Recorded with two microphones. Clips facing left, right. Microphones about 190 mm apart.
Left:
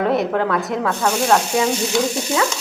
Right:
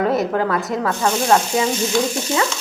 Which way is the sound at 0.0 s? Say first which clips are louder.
Even; centre (ahead or behind).